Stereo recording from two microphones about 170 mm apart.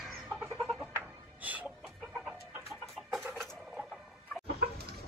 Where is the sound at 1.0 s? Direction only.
10° right (ahead or behind).